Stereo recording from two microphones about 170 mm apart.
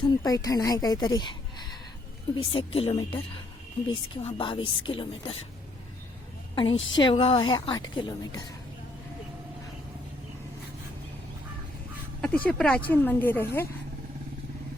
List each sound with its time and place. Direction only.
0.2 s a woman's voice: 20° left (ahead or behind)
6.6 s a woman's voice: 30° left (ahead or behind)
12.2 s speech: 10° left (ahead or behind)